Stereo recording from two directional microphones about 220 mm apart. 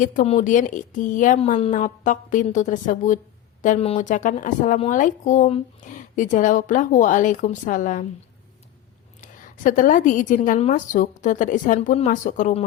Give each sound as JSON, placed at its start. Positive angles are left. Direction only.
{"t": 0.0, "sound": "speech", "side_deg": 35}
{"t": 9.2, "sound": "speech", "side_deg": 35}